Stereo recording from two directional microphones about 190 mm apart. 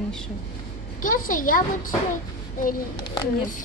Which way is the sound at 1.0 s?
45° left (ahead or behind).